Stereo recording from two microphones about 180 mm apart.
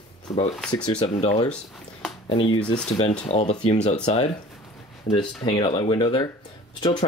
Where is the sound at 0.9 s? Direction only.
35° left (ahead or behind).